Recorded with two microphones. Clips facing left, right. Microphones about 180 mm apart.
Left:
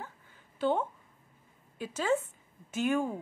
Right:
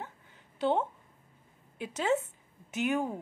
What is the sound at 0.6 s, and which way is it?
A woman's voice, 20° right (ahead or behind).